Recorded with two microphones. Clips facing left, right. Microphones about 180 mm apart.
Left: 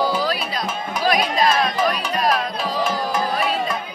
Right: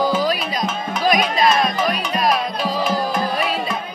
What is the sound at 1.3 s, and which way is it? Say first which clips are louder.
Music: right 1 dB; 10° right (ahead or behind).